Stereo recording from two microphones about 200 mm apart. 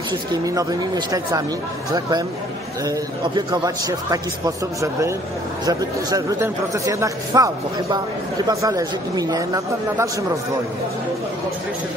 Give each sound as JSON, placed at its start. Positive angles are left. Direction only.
{"t": 0.3, "sound": "a man's voice", "side_deg": -20}
{"t": 3.3, "sound": "a man's voice", "side_deg": -20}
{"t": 5.7, "sound": "a man's voice", "side_deg": -20}